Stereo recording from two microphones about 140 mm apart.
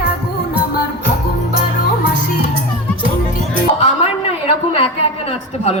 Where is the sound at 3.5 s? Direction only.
50° left (ahead or behind).